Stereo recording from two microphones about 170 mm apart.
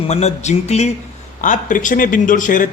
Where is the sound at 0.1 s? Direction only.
40° left (ahead or behind).